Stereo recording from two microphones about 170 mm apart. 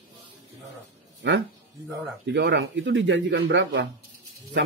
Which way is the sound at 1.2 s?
90° right.